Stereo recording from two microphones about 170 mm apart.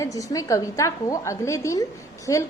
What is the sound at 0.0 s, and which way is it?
A woman's voice, 20° left (ahead or behind).